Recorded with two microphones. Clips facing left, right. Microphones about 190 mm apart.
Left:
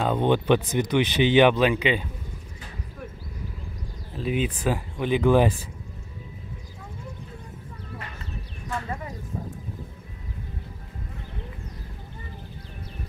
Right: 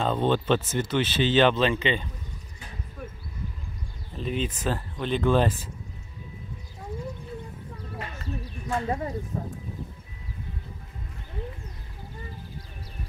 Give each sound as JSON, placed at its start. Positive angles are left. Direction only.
{"t": 0.0, "sound": "speech", "side_deg": 15}
{"t": 4.1, "sound": "speech", "side_deg": 5}
{"t": 8.7, "sound": "speech", "side_deg": -35}